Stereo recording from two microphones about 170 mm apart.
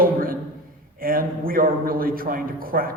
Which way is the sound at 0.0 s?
55° right (ahead or behind).